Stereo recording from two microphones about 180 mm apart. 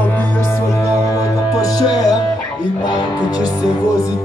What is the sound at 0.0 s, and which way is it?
Music, 10° left (ahead or behind).